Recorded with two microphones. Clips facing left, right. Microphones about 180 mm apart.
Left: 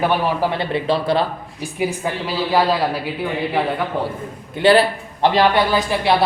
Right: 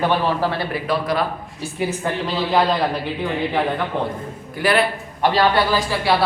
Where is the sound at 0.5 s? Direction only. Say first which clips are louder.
Left 3 dB; 25° left (ahead or behind).